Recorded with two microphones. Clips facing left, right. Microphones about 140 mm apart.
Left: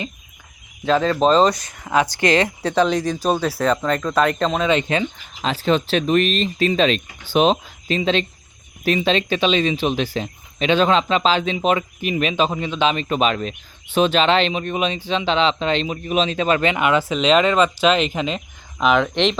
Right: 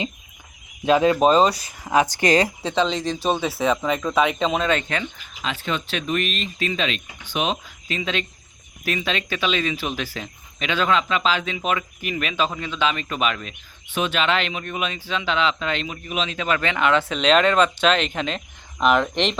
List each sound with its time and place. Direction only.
0.9 s speech: 15° right (ahead or behind)
2.7 s speech: 5° left (ahead or behind)
4.8 s speech: 20° left (ahead or behind)
5.4 s speech: 35° left (ahead or behind); by 19.4 s centre (ahead or behind)